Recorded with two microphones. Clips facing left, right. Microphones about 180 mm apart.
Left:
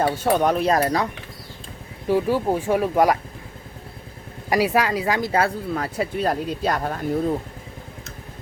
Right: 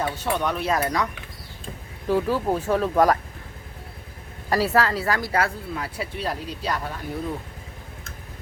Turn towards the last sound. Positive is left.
turn(degrees=50)  # may be behind; listen again after turning